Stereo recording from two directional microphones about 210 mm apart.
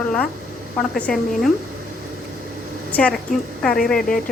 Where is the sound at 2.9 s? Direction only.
5° left (ahead or behind).